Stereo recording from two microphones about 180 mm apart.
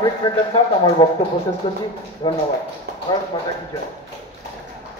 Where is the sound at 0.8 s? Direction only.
30° left (ahead or behind).